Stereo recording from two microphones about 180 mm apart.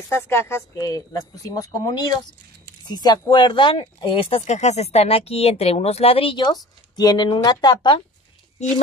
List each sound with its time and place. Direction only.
0.1 s a woman's voice: 15° left (ahead or behind)